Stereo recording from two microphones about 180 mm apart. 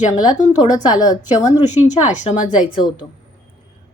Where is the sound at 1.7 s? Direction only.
40° left (ahead or behind).